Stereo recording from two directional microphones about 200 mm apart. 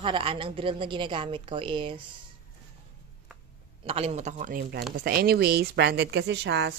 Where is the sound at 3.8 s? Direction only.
30° right (ahead or behind); by 6.7 s 60° right (ahead or behind).